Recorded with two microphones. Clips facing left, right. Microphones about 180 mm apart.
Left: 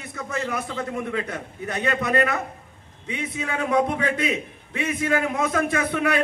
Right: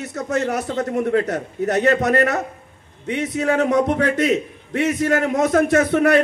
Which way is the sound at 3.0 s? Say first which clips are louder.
Right 9 dB; 70° right (ahead or behind).